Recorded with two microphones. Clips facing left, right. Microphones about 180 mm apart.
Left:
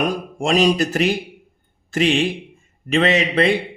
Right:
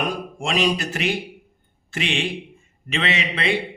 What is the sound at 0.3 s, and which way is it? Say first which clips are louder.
A man's voice: left 6 dB; 40° left (ahead or behind).